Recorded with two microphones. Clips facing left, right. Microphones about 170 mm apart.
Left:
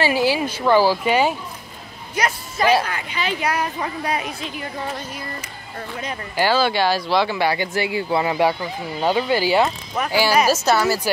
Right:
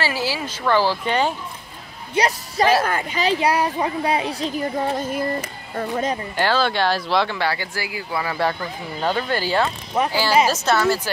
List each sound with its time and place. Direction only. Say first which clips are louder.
0.0 s speech: left 5 dB; 15° left (ahead or behind)
2.1 s speech: right 3 dB; 35° right (ahead or behind)
2.8 s speech: right 4 dB; 45° right (ahead or behind)
6.3 s speech: left 4 dB; 5° left (ahead or behind)
7.3 s speech: left 4 dB; 15° left (ahead or behind)
8.4 s speech: left 3 dB; 15° left (ahead or behind)
10.0 s speech: right 4 dB; 30° right (ahead or behind)
10.5 s speech: left 1 dB; 5° left (ahead or behind)